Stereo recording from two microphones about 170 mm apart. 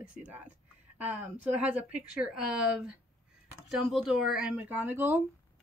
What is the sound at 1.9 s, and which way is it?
A woman's voice, 5° right (ahead or behind).